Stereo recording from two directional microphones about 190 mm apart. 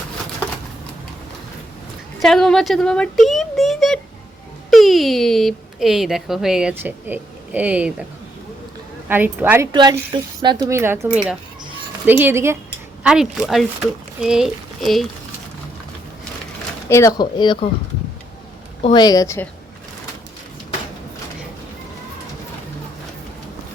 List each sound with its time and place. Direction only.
2.2 s speech: 5° left (ahead or behind)
9.0 s speech: 10° right (ahead or behind)
9.7 s speech: 20° right (ahead or behind); by 15.0 s centre (ahead or behind)
16.9 s speech: 15° left (ahead or behind)
18.8 s speech: 25° left (ahead or behind)